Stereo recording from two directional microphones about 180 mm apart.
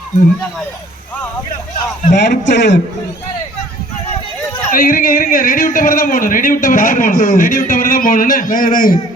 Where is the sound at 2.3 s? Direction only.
75° left (ahead or behind).